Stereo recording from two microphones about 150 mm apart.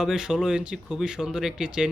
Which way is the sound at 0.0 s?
5° right (ahead or behind).